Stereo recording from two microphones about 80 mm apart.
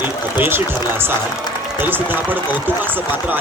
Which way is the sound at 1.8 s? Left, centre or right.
Right.